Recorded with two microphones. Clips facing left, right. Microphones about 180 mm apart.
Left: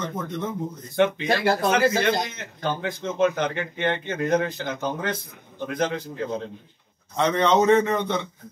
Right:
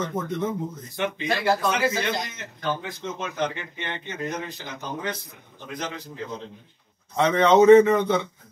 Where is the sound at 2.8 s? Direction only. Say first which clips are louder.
Left 9 dB; 60° left (ahead or behind).